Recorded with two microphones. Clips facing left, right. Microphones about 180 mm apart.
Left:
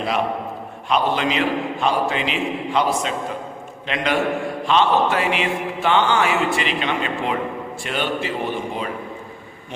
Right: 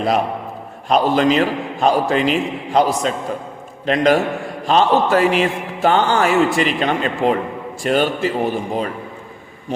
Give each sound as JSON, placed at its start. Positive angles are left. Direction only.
{"t": 0.9, "sound": "a man's voice", "side_deg": -40}